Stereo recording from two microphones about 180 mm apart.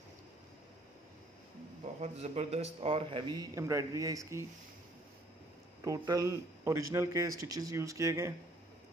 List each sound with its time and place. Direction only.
2.0 s speech: 35° right (ahead or behind); by 4.5 s 15° right (ahead or behind)
5.9 s speech: 20° right (ahead or behind)